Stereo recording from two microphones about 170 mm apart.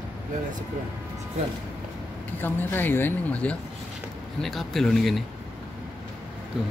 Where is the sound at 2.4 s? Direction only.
10° left (ahead or behind).